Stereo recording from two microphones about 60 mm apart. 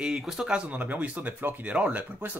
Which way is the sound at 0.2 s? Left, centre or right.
Centre.